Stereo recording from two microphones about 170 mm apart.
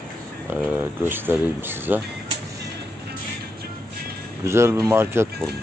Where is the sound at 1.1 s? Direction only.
10° right (ahead or behind).